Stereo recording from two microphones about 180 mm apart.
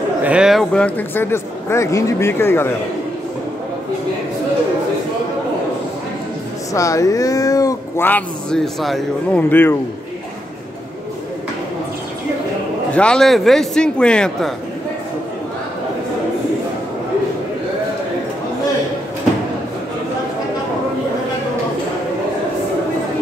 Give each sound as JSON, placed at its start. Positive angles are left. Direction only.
{"t": 0.2, "sound": "speech", "side_deg": -5}
{"t": 6.7, "sound": "speech", "side_deg": 15}
{"t": 12.9, "sound": "a man's voice", "side_deg": 5}